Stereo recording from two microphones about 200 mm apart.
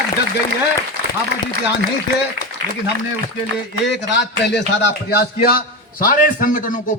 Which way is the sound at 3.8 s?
60° left (ahead or behind).